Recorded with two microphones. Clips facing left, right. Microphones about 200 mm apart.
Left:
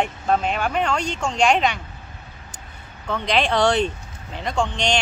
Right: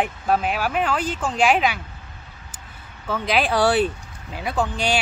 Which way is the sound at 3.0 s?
5° right (ahead or behind).